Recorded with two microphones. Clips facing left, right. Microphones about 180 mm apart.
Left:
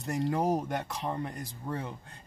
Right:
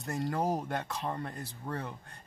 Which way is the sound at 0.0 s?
15° left (ahead or behind).